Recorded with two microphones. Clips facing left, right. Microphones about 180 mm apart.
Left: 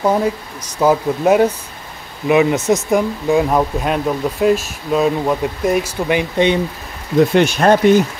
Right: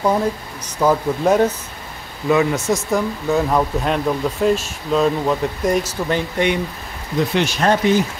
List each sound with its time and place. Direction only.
0.0 s speech: 10° left (ahead or behind)
7.3 s speech: 50° left (ahead or behind)